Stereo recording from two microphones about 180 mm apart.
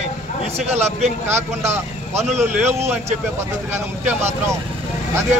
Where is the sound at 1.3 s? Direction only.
15° right (ahead or behind).